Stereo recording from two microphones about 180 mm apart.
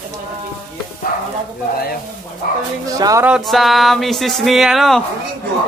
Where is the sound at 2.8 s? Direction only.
20° right (ahead or behind).